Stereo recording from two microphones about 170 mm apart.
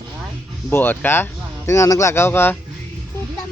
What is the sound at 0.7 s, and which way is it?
Speech, 10° left (ahead or behind).